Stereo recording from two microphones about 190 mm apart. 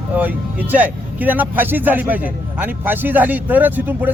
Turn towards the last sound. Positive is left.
turn(degrees=-10)  # may be behind; listen again after turning